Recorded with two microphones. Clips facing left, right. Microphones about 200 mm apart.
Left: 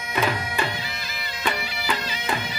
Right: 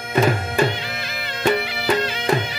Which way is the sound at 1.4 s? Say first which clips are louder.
Right 8 dB; 55° right (ahead or behind).